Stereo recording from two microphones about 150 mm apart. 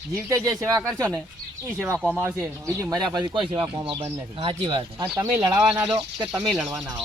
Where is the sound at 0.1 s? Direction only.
20° right (ahead or behind); by 5.0 s 35° right (ahead or behind).